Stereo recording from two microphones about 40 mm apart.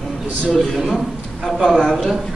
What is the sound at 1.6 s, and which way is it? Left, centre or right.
Speech, centre.